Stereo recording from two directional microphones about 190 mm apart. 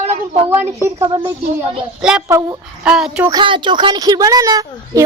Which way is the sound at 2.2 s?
15° right (ahead or behind).